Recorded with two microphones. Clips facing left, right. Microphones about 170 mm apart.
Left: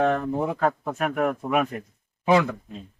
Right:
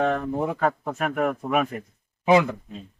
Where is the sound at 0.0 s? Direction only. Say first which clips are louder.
Left 1 dB; centre (ahead or behind).